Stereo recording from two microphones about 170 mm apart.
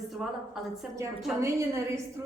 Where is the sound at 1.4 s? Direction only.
15° right (ahead or behind).